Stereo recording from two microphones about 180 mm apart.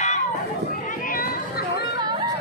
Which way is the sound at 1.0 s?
55° left (ahead or behind).